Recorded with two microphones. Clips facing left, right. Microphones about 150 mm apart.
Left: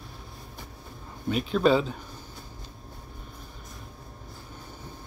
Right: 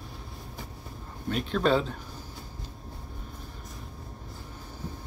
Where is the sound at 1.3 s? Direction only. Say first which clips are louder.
Left 3 dB; 5° left (ahead or behind).